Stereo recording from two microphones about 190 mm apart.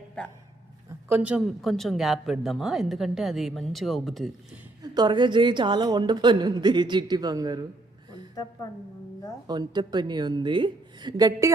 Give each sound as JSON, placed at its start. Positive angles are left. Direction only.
{"t": 1.0, "sound": "a woman's voice", "side_deg": -10}
{"t": 4.8, "sound": "a woman's voice", "side_deg": -20}
{"t": 9.5, "sound": "a woman's voice", "side_deg": -20}